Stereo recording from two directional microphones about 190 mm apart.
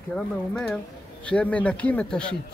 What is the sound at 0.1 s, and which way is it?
Speech, 5° left (ahead or behind).